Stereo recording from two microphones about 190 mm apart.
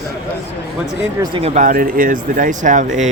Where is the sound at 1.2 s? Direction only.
30° right (ahead or behind).